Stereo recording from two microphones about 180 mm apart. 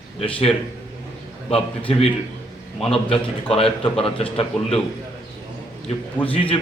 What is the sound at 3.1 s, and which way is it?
A man's voice, 30° left (ahead or behind).